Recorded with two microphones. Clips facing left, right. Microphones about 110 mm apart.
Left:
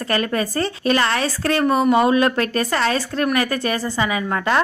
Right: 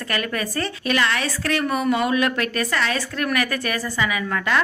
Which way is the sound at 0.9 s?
35° left (ahead or behind).